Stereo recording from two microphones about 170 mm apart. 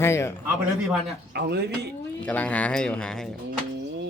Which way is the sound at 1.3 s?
75° right (ahead or behind).